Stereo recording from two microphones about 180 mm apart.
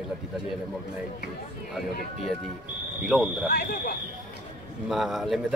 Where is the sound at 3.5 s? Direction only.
60° left (ahead or behind).